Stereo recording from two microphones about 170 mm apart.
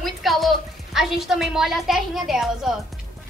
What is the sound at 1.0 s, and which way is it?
A woman's voice, centre (ahead or behind).